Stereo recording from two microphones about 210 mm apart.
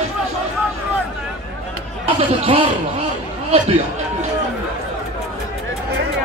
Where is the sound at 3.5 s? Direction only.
30° right (ahead or behind).